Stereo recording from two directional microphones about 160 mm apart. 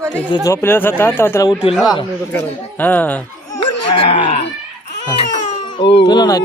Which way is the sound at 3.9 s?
35° left (ahead or behind).